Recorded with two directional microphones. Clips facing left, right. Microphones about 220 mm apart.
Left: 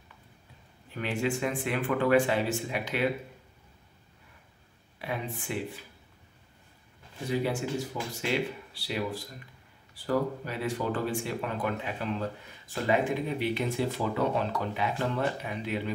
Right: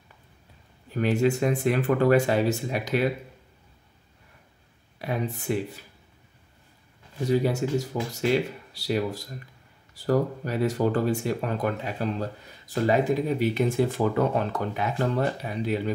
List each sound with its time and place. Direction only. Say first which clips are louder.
0.9 s speech: right 7 dB; 40° right (ahead or behind)
4.9 s speech: right 5 dB; 40° right (ahead or behind)
7.2 s speech: right 6 dB; 40° right (ahead or behind)
8.7 s speech: right 7 dB; 40° right (ahead or behind)